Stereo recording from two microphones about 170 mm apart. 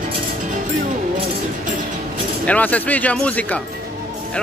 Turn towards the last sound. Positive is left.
turn(degrees=10)  # may be behind; listen again after turning